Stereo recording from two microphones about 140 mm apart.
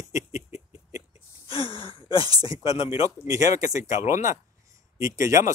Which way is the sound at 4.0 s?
60° left (ahead or behind).